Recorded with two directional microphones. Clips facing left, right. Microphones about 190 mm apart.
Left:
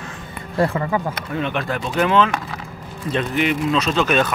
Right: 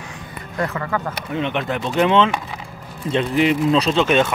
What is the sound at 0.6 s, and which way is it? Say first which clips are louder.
Speech: left 5 dB; 30° left (ahead or behind).